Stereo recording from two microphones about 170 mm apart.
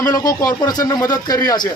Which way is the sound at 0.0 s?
20° left (ahead or behind).